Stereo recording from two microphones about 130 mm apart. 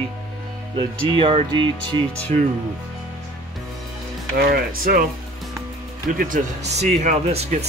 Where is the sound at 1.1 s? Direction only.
40° right (ahead or behind).